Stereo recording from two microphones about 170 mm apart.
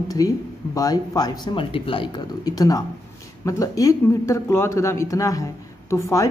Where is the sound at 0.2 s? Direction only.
20° left (ahead or behind).